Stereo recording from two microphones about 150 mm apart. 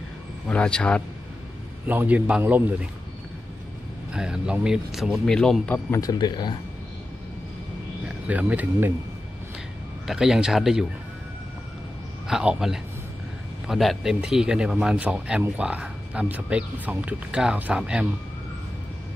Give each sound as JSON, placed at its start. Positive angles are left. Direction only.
{"t": 0.5, "sound": "a man's voice", "side_deg": 5}
{"t": 1.9, "sound": "speech", "side_deg": -10}
{"t": 4.1, "sound": "speech", "side_deg": -5}
{"t": 5.9, "sound": "speech", "side_deg": 25}
{"t": 8.3, "sound": "speech", "side_deg": -10}
{"t": 10.0, "sound": "speech", "side_deg": -5}
{"t": 12.3, "sound": "speech", "side_deg": -5}